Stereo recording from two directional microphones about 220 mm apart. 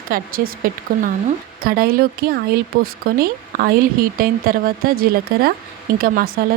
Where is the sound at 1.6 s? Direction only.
45° right (ahead or behind).